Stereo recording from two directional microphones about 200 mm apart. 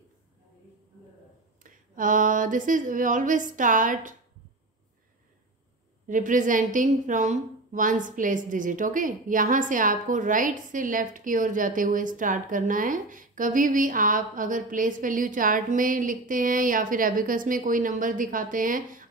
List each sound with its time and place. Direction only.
1.6 s a woman's voice: 40° right (ahead or behind)
6.0 s a woman's voice: 40° right (ahead or behind)